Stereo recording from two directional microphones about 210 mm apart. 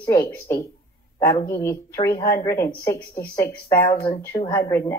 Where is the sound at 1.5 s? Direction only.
15° left (ahead or behind).